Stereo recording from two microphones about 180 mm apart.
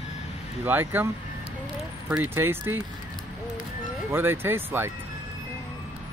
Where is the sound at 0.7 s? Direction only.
10° right (ahead or behind).